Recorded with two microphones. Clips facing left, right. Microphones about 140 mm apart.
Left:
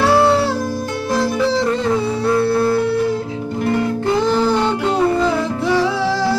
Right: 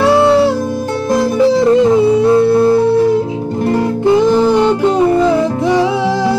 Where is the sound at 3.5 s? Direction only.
30° right (ahead or behind).